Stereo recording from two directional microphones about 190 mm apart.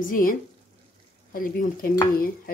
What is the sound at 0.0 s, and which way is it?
Speech, 45° left (ahead or behind).